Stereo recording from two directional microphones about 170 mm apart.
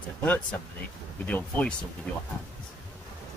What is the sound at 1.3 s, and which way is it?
Speech, 10° left (ahead or behind).